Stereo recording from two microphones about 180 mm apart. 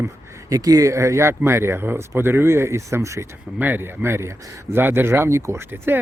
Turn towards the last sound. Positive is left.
turn(degrees=-15)  # may be behind; listen again after turning